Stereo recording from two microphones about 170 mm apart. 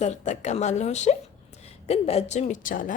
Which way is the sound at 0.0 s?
45° left (ahead or behind).